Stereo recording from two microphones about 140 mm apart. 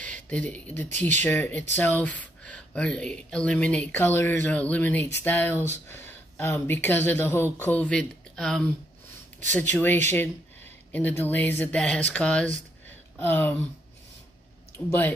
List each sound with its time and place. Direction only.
0.0 s speech: 10° left (ahead or behind)
14.9 s speech: 15° left (ahead or behind)